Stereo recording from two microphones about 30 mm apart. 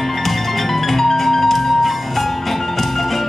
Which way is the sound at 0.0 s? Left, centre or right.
Centre.